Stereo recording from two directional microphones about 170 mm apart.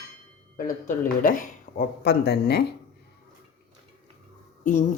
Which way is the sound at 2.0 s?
70° left (ahead or behind).